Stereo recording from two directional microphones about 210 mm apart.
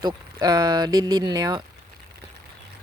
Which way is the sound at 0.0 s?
20° right (ahead or behind).